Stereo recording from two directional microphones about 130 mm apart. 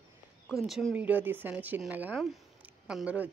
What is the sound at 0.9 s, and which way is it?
Speech, 10° right (ahead or behind).